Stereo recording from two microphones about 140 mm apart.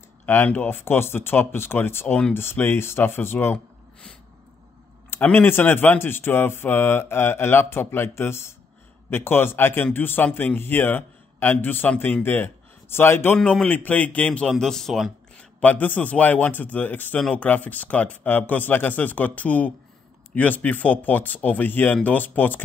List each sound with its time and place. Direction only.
0.3 s a man's voice: 15° left (ahead or behind)
5.1 s a man's voice: 15° left (ahead or behind)
15.6 s a man's voice: 10° left (ahead or behind)